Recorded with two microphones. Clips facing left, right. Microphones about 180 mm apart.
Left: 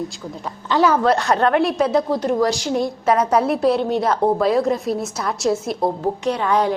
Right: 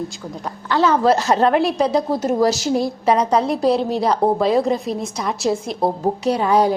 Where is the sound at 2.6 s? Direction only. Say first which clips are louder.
Right 2 dB; 35° right (ahead or behind).